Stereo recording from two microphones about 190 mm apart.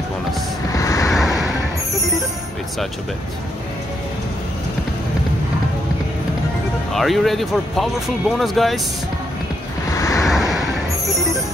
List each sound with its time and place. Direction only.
0.7 s vehicle: 15° left (ahead or behind)
1.1 s vehicle: centre (ahead or behind)
6.9 s speech: centre (ahead or behind)
9.9 s vehicle: 15° left (ahead or behind)
10.2 s vehicle: centre (ahead or behind)